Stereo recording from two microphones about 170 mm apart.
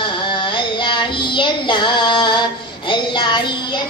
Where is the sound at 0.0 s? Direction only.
30° left (ahead or behind).